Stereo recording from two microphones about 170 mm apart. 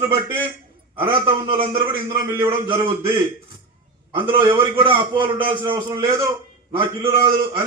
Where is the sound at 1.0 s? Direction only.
30° right (ahead or behind).